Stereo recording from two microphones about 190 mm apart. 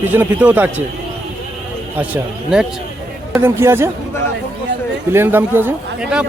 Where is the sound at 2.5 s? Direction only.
5° right (ahead or behind).